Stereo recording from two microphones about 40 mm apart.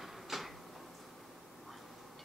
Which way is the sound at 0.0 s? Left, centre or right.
Centre.